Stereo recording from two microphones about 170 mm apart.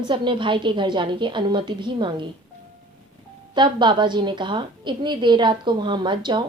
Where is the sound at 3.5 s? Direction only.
25° right (ahead or behind).